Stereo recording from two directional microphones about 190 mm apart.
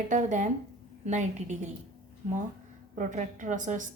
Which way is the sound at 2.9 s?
40° right (ahead or behind).